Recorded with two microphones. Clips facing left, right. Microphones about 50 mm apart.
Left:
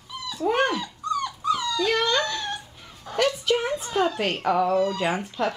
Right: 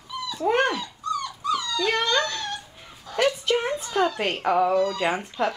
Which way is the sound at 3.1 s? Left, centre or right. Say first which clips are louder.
Left 1 dB; left.